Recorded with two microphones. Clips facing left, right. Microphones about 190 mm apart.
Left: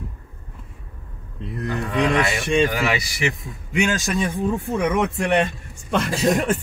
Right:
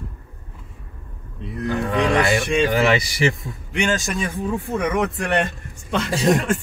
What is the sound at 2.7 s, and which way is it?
Speech, 30° right (ahead or behind).